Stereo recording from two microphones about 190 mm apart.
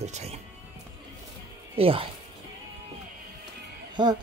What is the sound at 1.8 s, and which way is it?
Speech, 30° right (ahead or behind).